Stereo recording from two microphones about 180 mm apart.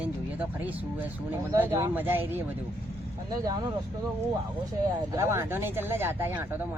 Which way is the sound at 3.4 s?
20° right (ahead or behind).